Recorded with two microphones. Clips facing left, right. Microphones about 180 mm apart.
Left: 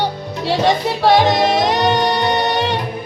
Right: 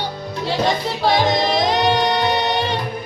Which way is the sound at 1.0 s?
70° left (ahead or behind).